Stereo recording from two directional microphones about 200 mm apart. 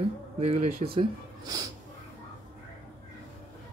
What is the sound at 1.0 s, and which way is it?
Speech, 15° right (ahead or behind).